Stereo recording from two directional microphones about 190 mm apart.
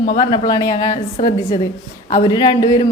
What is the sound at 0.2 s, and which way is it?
A woman's voice, 25° left (ahead or behind).